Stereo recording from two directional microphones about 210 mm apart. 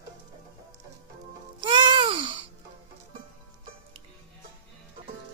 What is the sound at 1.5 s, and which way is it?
Music, 20° right (ahead or behind).